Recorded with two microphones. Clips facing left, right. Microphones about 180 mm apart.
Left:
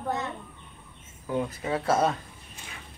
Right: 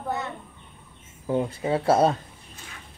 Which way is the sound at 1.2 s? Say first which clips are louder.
Right 4 dB; 25° right (ahead or behind).